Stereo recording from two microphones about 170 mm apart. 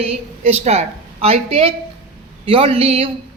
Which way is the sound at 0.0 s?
40° right (ahead or behind).